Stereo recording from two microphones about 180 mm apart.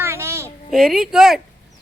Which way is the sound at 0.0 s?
15° right (ahead or behind).